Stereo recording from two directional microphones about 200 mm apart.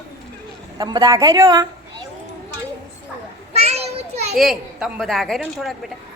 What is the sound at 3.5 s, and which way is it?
Children playing, 30° right (ahead or behind).